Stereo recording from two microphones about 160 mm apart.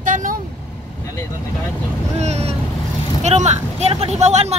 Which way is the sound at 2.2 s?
40° right (ahead or behind).